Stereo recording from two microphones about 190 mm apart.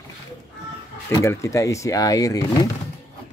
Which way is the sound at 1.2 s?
15° left (ahead or behind).